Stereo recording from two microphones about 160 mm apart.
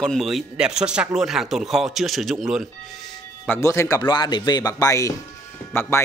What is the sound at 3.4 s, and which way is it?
Speech, 15° left (ahead or behind).